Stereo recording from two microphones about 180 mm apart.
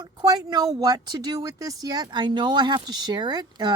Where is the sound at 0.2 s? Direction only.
25° right (ahead or behind).